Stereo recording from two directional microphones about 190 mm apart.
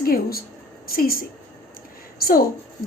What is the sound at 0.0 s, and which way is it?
A woman's voice, 50° left (ahead or behind).